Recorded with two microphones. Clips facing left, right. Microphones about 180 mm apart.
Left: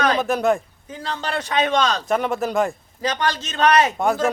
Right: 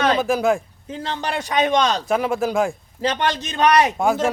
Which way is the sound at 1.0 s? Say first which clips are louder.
Even; 20° right (ahead or behind).